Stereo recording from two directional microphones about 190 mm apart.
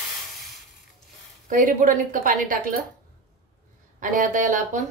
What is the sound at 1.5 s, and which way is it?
A woman's voice, 45° right (ahead or behind).